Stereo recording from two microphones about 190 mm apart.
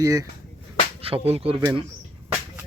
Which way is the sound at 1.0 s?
30° right (ahead or behind).